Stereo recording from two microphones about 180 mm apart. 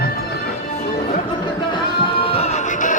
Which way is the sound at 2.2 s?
35° left (ahead or behind).